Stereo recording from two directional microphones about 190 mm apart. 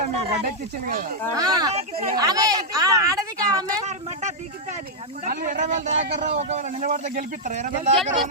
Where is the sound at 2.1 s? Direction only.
20° right (ahead or behind).